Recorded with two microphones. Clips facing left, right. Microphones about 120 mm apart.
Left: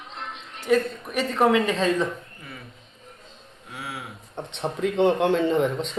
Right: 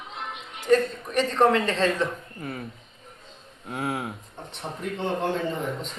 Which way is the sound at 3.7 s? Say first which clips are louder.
Right 7 dB; 45° right (ahead or behind).